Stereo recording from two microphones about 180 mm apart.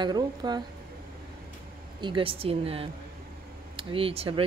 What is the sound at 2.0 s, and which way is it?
Speech, 25° right (ahead or behind).